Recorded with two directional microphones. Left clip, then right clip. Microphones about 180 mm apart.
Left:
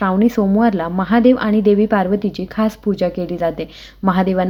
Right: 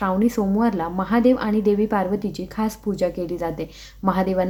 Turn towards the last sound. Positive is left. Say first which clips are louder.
# left 4 dB
turn(degrees=20)  # may be behind; listen again after turning